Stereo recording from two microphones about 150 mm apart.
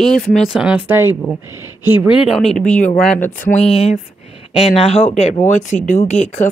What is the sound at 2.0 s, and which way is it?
Speech, 5° right (ahead or behind).